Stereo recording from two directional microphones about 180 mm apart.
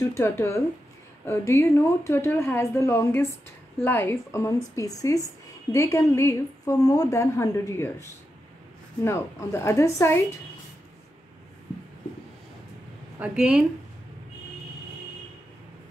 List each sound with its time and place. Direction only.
0.0 s a woman's voice: 15° left (ahead or behind)
13.2 s a woman's voice: 5° right (ahead or behind)